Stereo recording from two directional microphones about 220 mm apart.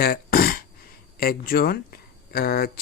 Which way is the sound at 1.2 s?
45° left (ahead or behind).